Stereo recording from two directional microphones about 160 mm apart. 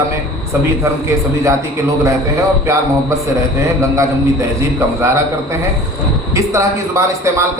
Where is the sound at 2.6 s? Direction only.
20° right (ahead or behind).